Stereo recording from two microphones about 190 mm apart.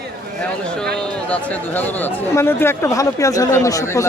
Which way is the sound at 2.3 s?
10° left (ahead or behind).